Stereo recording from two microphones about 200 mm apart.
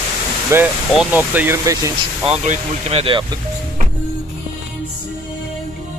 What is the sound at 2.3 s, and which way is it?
Speech, 35° right (ahead or behind).